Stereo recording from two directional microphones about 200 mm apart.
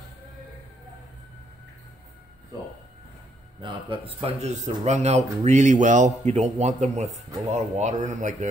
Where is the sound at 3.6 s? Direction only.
25° right (ahead or behind).